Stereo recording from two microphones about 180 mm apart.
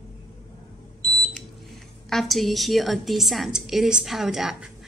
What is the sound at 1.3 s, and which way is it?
Speech, centre (ahead or behind).